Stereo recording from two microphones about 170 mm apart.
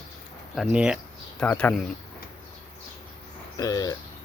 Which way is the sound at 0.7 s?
5° right (ahead or behind).